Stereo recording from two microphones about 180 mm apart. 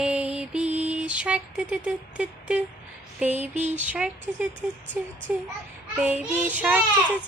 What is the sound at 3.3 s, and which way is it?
Mantra, 40° right (ahead or behind).